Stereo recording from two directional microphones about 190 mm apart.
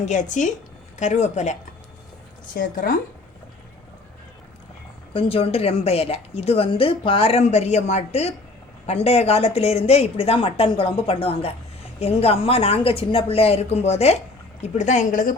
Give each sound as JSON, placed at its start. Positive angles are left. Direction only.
{"t": 0.0, "sound": "a woman's voice", "side_deg": 40}
{"t": 5.1, "sound": "a woman's voice", "side_deg": 30}